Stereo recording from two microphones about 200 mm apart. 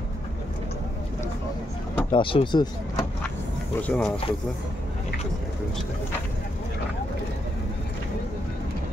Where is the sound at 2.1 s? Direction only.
25° left (ahead or behind).